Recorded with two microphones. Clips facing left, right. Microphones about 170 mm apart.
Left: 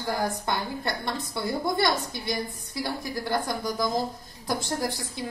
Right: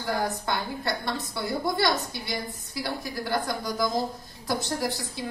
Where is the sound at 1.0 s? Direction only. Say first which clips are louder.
Even; 20° right (ahead or behind).